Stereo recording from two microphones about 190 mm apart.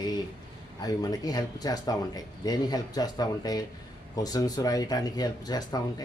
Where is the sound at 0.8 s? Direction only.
20° left (ahead or behind).